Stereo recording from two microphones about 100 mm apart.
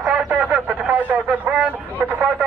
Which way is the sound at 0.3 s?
15° right (ahead or behind).